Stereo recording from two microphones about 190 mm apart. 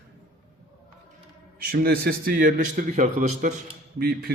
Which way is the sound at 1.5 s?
50° right (ahead or behind).